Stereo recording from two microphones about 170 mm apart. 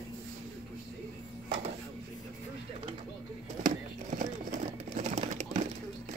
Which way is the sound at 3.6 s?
45° right (ahead or behind).